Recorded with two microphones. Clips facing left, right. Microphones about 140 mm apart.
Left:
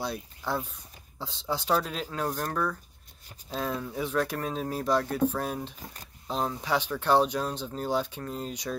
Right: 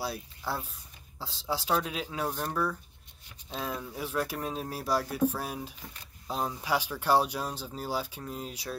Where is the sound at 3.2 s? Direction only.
40° left (ahead or behind).